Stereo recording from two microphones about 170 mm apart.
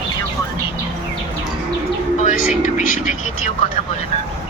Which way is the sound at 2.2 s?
45° left (ahead or behind).